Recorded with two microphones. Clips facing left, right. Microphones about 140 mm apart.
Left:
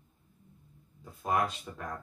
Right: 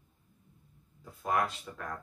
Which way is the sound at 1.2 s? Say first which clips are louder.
Left 1 dB; 20° left (ahead or behind).